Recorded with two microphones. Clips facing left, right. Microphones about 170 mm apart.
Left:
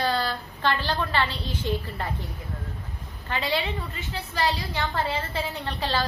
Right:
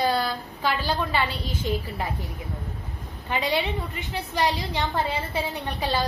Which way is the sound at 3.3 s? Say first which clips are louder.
Right 2 dB; 15° right (ahead or behind).